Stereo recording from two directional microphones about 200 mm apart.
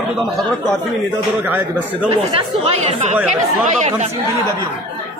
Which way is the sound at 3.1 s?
Centre (ahead or behind).